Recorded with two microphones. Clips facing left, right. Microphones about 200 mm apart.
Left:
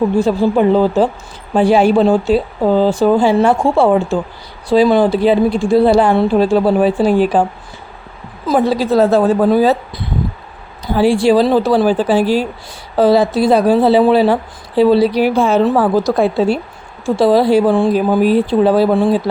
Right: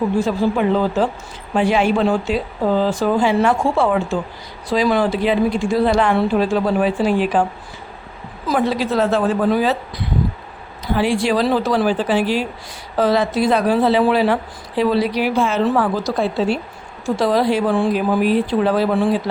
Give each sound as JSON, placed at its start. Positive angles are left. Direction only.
{"t": 0.2, "sound": "speech", "side_deg": 30}
{"t": 8.4, "sound": "speech", "side_deg": 30}
{"t": 16.0, "sound": "speech", "side_deg": 55}
{"t": 17.2, "sound": "speech", "side_deg": 30}